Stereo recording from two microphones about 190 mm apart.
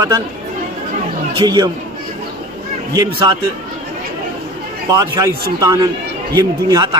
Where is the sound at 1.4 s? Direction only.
20° right (ahead or behind).